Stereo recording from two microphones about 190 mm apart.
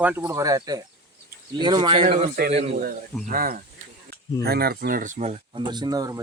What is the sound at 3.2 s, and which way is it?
Speech, 50° right (ahead or behind).